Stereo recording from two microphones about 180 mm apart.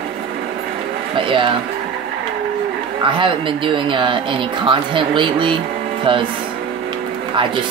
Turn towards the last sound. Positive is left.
turn(degrees=-30)  # may be behind; listen again after turning